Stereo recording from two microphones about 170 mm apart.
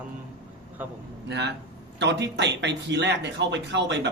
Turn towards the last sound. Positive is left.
turn(degrees=-90)